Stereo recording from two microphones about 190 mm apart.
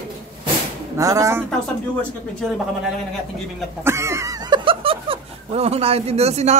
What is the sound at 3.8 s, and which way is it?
Speech, 15° right (ahead or behind).